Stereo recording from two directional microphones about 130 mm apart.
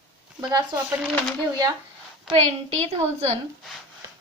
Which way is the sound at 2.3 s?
5° right (ahead or behind).